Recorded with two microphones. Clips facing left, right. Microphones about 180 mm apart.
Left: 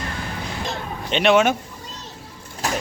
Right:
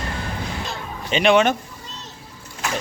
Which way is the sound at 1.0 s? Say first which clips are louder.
Even; centre (ahead or behind).